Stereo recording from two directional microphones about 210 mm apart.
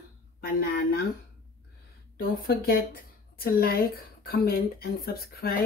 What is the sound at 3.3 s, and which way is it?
Speech, 45° left (ahead or behind).